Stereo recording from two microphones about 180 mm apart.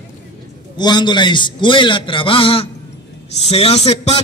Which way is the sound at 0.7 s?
25° left (ahead or behind).